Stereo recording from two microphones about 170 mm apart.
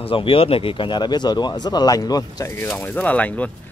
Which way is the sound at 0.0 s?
30° left (ahead or behind).